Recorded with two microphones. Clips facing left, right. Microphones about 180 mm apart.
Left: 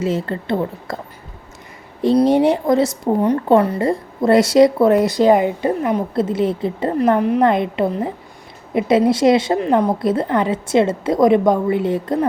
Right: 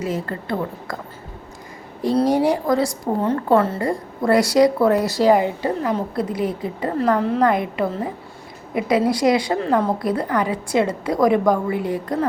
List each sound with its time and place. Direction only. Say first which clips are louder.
0.0 s a woman's voice: left 4 dB; 25° left (ahead or behind)
2.1 s a woman's voice: left 3 dB; 20° left (ahead or behind)